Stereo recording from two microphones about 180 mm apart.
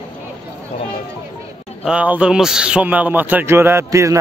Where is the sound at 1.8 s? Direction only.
5° right (ahead or behind).